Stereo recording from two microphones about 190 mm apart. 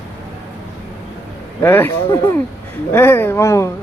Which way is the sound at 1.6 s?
10° left (ahead or behind).